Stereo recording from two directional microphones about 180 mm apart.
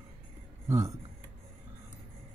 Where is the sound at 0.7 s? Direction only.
15° right (ahead or behind).